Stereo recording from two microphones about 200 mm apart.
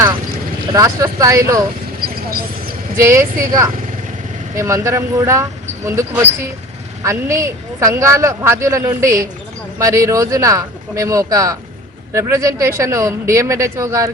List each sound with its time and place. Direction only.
0.7 s speech: 15° right (ahead or behind)
3.0 s speech: 15° right (ahead or behind)